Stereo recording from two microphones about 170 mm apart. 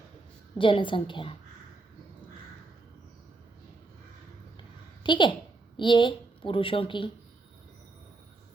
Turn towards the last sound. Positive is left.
turn(degrees=30)  # may be behind; listen again after turning